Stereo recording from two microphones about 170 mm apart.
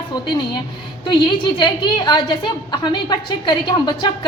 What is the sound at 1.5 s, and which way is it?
A woman's voice, 25° left (ahead or behind).